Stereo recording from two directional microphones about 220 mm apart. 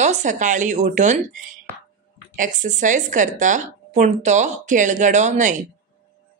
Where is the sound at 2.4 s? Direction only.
35° right (ahead or behind).